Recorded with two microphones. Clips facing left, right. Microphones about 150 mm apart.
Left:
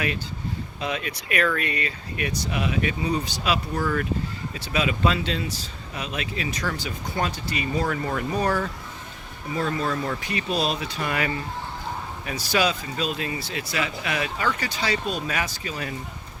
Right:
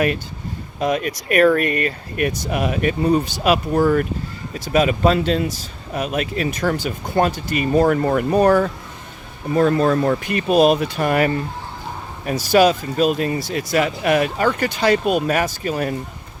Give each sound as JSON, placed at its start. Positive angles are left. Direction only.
{"t": 0.8, "sound": "speech", "side_deg": -50}